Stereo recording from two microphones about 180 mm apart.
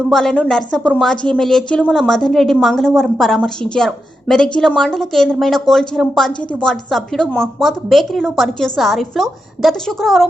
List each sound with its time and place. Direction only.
0.1 s a woman's voice: centre (ahead or behind)